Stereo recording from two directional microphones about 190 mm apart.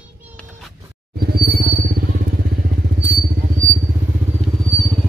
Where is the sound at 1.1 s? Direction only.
55° right (ahead or behind).